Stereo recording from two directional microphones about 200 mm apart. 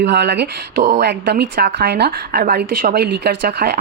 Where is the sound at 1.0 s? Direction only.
55° right (ahead or behind).